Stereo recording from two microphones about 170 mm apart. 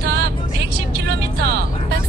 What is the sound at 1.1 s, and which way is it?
Music, 75° right (ahead or behind).